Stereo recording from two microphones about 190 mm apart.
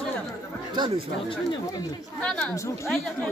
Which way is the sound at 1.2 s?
20° left (ahead or behind).